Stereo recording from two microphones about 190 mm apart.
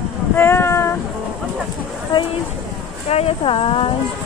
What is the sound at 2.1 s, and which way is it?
Speech, 25° left (ahead or behind).